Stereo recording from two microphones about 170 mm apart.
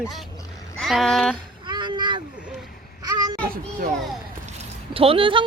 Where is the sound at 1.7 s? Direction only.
25° right (ahead or behind).